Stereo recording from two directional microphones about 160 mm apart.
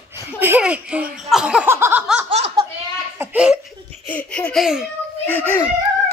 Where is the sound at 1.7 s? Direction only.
15° right (ahead or behind).